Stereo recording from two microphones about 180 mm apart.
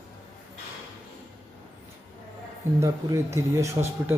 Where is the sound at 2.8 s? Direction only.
15° right (ahead or behind).